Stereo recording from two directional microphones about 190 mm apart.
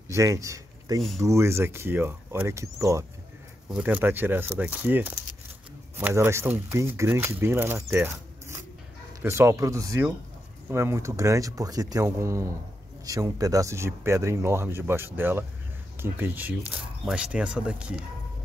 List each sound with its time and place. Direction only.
0.1 s speech: 15° right (ahead or behind)